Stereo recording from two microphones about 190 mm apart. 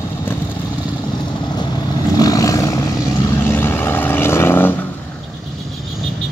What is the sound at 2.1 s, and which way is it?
Vehicle, 20° left (ahead or behind).